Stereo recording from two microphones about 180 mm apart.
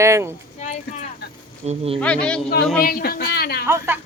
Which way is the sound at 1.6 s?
35° right (ahead or behind).